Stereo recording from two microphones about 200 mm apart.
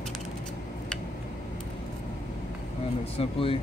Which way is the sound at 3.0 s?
30° left (ahead or behind).